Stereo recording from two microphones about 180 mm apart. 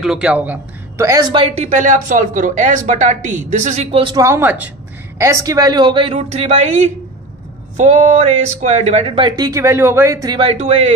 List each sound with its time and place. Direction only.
0.0 s speech: 5° right (ahead or behind)
1.3 s speech: 30° right (ahead or behind)
1.7 s speech: 45° right (ahead or behind)
4.0 s speech: 25° right (ahead or behind)
4.3 s a woman's voice: 10° right (ahead or behind); by 6.1 s 25° right (ahead or behind)
6.1 s speech: 40° right (ahead or behind)